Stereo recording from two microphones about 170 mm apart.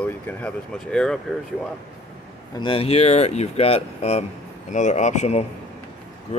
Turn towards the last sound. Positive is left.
turn(degrees=40)  # may be behind; listen again after turning